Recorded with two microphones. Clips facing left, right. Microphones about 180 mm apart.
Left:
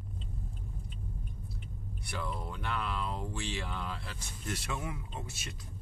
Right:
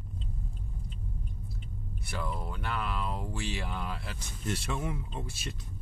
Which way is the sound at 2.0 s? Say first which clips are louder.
Right 2 dB; centre (ahead or behind).